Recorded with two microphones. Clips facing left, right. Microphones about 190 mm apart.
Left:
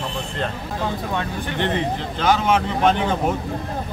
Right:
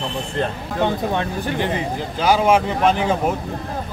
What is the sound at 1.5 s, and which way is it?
Speech, 10° right (ahead or behind).